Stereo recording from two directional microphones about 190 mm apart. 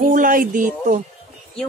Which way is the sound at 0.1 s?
45° right (ahead or behind).